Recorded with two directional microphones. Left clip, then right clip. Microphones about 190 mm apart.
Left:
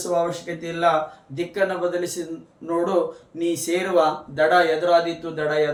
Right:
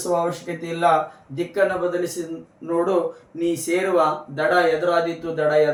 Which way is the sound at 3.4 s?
25° left (ahead or behind).